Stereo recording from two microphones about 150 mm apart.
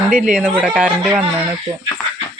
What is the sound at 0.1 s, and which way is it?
A woman's voice, 5° right (ahead or behind).